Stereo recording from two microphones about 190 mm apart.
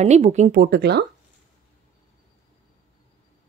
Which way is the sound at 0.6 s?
60° right (ahead or behind).